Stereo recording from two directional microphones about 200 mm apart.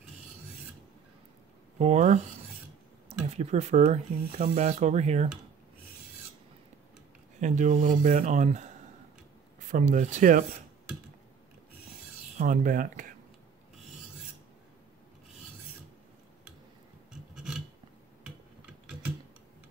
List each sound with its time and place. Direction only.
1.8 s speech: 35° right (ahead or behind)
7.3 s speech: 40° right (ahead or behind)
9.7 s speech: 40° right (ahead or behind)
12.4 s speech: 40° right (ahead or behind)
17.4 s filing: 5° right (ahead or behind)